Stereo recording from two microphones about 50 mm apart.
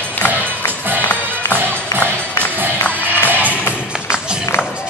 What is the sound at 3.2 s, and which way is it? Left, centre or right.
Music, right.